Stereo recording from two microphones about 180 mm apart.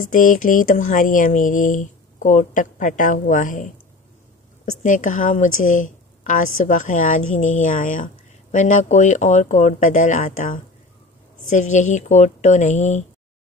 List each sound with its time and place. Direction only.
0.0 s a woman's voice: 45° left (ahead or behind)